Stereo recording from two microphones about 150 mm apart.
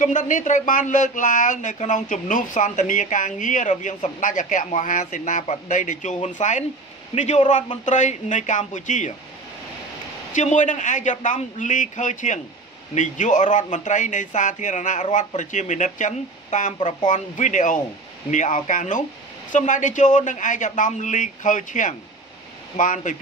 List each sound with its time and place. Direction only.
0.0 s a man's voice: 60° left (ahead or behind)
10.3 s speech: 55° left (ahead or behind)